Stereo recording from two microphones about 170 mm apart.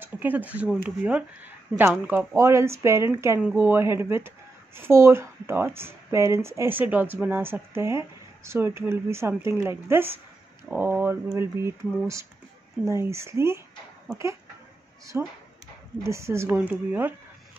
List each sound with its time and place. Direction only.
0.0 s a sound: 10° right (ahead or behind)
0.6 s speech: 5° right (ahead or behind)
15.1 s speech: 15° right (ahead or behind)